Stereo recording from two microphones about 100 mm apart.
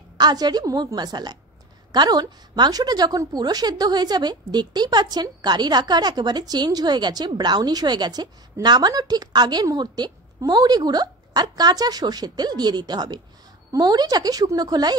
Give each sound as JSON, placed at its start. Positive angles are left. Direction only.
{"t": 0.2, "sound": "a woman's voice", "side_deg": -45}